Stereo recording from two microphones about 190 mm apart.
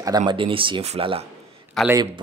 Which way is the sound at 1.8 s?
20° right (ahead or behind).